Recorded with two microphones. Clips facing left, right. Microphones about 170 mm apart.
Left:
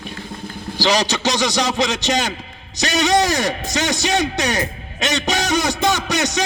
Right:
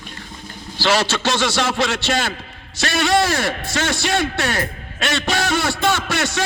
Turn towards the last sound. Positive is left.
turn(degrees=20)  # may be behind; listen again after turning